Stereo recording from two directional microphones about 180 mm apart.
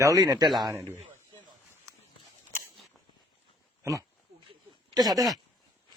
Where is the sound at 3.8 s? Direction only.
15° right (ahead or behind).